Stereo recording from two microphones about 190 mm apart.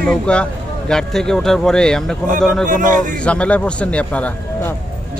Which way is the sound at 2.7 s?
45° right (ahead or behind).